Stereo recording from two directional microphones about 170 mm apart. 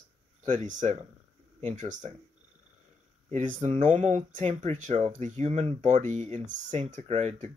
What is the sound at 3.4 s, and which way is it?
Speech, 45° right (ahead or behind).